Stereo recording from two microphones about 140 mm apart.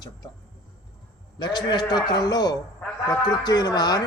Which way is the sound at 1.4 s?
30° left (ahead or behind).